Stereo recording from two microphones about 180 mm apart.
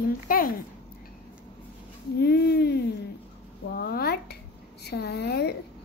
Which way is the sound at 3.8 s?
60° left (ahead or behind).